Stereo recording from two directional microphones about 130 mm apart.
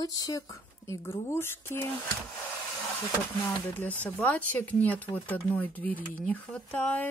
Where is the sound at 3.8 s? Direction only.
15° left (ahead or behind).